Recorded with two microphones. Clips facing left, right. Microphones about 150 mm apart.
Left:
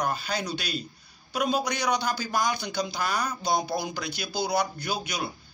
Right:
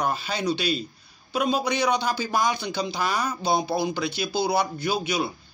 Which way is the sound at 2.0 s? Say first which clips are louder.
Right 3 dB; centre (ahead or behind).